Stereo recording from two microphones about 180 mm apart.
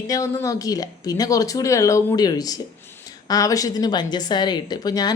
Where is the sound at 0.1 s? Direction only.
20° left (ahead or behind).